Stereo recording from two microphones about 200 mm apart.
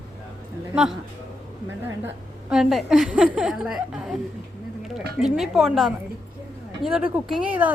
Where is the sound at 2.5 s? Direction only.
Centre (ahead or behind).